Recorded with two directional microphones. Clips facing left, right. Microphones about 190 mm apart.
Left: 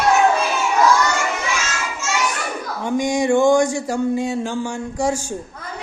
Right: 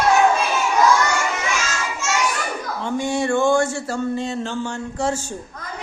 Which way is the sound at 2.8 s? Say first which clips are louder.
Left 3 dB; 15° left (ahead or behind).